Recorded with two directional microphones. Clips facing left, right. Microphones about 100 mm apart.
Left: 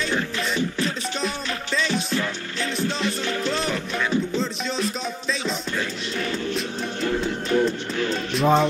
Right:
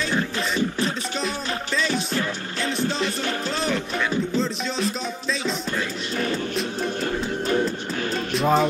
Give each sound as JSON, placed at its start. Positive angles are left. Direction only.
{"t": 0.4, "sound": "music", "side_deg": -35}
{"t": 1.2, "sound": "music", "side_deg": 0}
{"t": 4.4, "sound": "music", "side_deg": 0}
{"t": 8.3, "sound": "music", "side_deg": 0}